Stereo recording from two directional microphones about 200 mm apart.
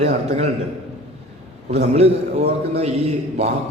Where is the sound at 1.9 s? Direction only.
30° right (ahead or behind).